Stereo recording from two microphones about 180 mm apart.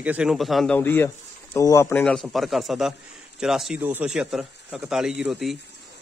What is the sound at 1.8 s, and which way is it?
A man's voice, 5° left (ahead or behind).